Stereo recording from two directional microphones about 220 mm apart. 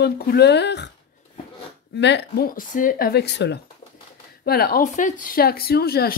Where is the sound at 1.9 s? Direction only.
50° left (ahead or behind).